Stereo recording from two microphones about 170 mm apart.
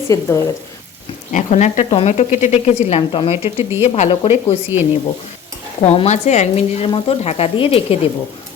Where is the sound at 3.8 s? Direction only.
35° left (ahead or behind).